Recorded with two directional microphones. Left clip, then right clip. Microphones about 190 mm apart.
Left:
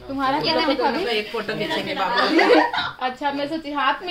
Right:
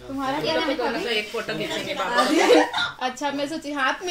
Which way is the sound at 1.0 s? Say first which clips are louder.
Left 2 dB; 60° left (ahead or behind).